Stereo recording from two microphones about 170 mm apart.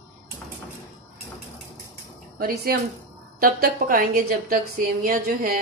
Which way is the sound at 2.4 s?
60° right (ahead or behind).